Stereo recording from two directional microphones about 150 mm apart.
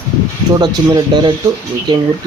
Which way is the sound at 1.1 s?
25° right (ahead or behind).